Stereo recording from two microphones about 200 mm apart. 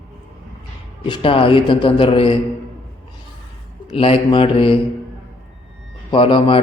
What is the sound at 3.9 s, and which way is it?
Speech, 30° left (ahead or behind).